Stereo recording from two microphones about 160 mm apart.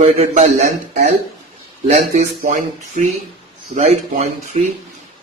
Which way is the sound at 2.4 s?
55° right (ahead or behind).